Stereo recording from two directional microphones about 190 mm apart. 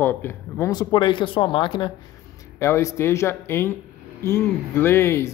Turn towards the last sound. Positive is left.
turn(degrees=15)  # may be behind; listen again after turning